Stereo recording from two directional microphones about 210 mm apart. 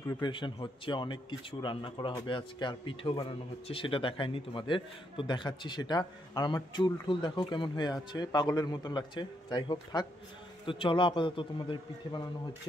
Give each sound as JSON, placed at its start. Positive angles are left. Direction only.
{"t": 0.0, "sound": "a man's voice", "side_deg": 20}